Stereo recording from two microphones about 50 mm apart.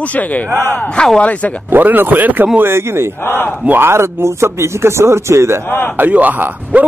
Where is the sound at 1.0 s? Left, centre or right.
Centre.